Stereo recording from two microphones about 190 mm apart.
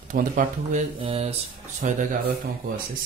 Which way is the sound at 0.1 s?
45° right (ahead or behind).